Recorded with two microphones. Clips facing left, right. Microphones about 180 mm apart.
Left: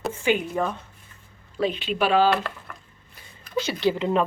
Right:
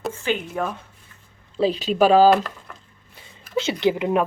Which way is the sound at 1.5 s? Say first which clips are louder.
Right 5 dB; 35° right (ahead or behind).